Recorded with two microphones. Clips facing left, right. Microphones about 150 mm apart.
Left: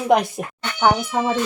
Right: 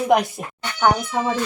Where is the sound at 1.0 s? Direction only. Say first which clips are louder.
Left 1 dB; 15° left (ahead or behind).